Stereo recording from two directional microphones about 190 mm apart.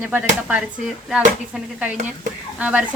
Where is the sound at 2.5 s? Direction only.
10° right (ahead or behind).